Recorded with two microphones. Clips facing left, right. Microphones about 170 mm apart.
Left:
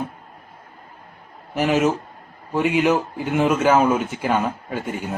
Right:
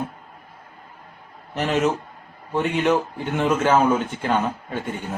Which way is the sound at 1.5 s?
10° left (ahead or behind).